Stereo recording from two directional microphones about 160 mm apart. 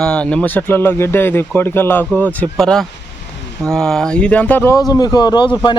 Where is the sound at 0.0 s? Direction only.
5° left (ahead or behind).